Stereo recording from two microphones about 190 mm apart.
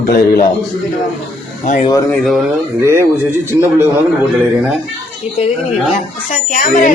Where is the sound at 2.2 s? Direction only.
Centre (ahead or behind).